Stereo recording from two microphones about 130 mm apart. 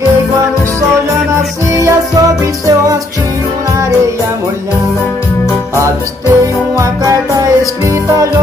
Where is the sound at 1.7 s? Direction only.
25° right (ahead or behind).